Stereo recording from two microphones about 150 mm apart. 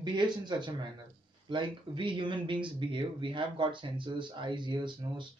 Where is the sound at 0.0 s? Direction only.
30° right (ahead or behind).